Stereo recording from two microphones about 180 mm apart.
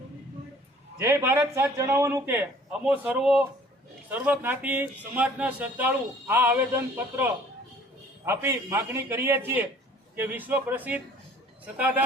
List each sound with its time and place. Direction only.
0.9 s a man's voice: 15° right (ahead or behind)